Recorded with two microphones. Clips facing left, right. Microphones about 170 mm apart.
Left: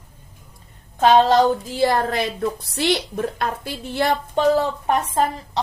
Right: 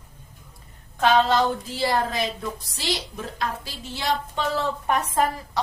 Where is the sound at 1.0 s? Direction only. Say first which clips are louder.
Left 5 dB; 35° left (ahead or behind).